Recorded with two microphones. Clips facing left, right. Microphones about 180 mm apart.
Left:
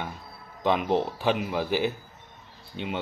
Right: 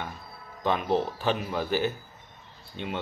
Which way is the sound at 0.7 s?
15° left (ahead or behind).